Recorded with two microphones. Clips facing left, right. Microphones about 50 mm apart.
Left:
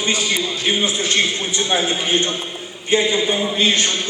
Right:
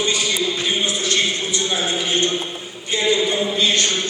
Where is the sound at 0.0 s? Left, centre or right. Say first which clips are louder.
Even; left.